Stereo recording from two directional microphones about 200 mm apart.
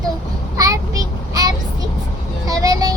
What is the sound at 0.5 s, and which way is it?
A child's voice, 15° right (ahead or behind).